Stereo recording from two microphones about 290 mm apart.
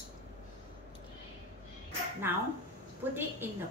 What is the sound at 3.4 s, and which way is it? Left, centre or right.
Speech, centre.